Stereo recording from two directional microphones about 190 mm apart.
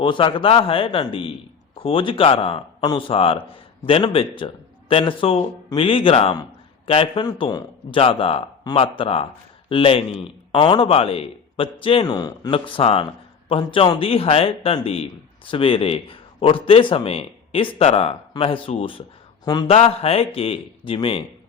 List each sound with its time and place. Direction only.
0.0 s a man's voice: 25° left (ahead or behind)
19.7 s a man's voice: 35° left (ahead or behind)